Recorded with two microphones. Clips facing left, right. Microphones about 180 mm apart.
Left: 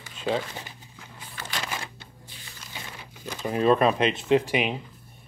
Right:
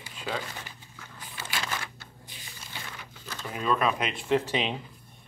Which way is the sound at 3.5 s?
35° left (ahead or behind).